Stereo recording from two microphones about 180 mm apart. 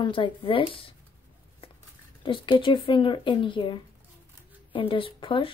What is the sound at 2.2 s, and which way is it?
Speech, 30° left (ahead or behind).